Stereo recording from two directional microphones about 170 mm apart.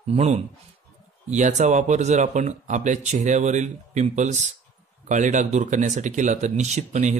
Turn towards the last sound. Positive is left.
turn(degrees=-45)  # may be behind; listen again after turning